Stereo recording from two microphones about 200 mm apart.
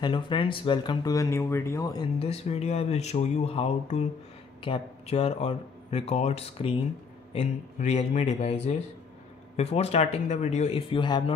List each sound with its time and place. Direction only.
0.0 s speech: 25° left (ahead or behind)
9.6 s speech: 30° left (ahead or behind)